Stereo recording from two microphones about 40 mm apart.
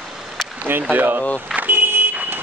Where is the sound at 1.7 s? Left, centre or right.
Right.